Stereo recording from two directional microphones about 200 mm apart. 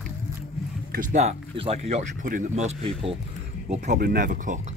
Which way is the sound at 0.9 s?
35° right (ahead or behind).